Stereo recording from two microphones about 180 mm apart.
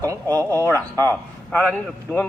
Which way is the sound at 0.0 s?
20° right (ahead or behind).